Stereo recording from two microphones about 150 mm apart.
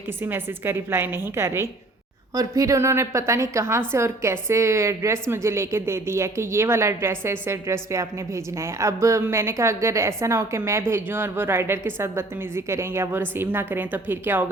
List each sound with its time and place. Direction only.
0.3 s a woman's voice: 15° right (ahead or behind)